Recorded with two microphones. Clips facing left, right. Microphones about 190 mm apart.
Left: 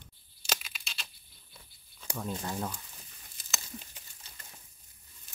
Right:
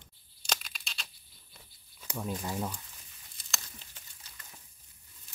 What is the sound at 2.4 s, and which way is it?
Speech, 10° right (ahead or behind).